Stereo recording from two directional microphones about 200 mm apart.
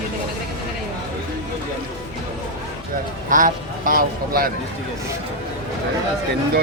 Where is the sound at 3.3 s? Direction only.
40° right (ahead or behind).